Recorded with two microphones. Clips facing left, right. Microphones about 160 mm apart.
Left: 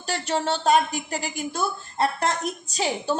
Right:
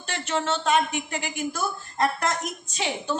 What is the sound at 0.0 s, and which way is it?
A woman's voice, 35° left (ahead or behind).